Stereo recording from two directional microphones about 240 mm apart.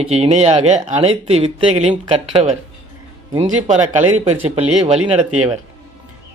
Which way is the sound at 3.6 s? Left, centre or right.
Right.